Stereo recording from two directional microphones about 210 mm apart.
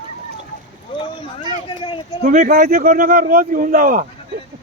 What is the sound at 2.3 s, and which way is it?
A man's voice, 40° right (ahead or behind).